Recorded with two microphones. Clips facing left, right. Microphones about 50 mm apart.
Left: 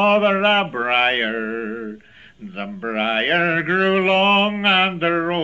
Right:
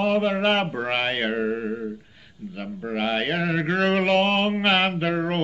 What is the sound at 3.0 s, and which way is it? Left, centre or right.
Mantra, left.